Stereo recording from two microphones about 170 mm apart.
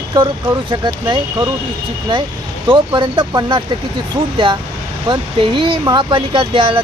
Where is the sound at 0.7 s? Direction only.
25° right (ahead or behind).